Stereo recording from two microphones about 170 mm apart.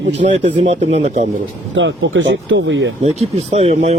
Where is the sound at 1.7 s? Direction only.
90° right.